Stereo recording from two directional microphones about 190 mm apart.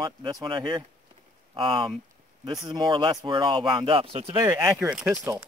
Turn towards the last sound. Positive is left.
turn(degrees=-5)  # may be behind; listen again after turning